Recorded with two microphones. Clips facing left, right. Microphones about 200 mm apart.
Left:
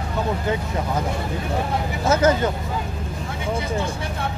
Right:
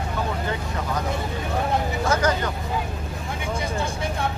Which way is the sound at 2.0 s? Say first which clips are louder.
Left 7 dB; 25° left (ahead or behind).